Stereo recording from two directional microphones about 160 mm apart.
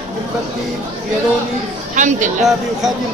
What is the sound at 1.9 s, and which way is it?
Speech, 50° right (ahead or behind).